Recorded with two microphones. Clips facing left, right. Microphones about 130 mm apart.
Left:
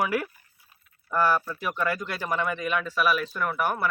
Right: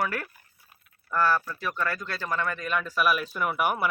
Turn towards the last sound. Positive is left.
turn(degrees=-15)  # may be behind; listen again after turning